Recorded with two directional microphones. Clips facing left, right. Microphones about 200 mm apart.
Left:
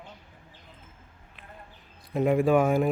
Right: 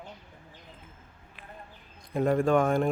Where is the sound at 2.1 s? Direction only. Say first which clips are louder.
Left 2 dB; 10° left (ahead or behind).